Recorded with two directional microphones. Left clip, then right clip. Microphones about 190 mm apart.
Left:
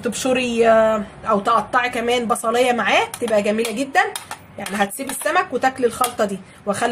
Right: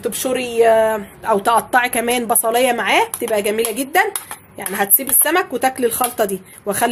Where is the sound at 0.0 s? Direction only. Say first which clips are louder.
Even; 40° right (ahead or behind).